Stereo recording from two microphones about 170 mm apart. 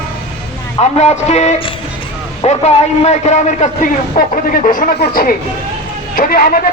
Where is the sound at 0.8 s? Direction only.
40° left (ahead or behind).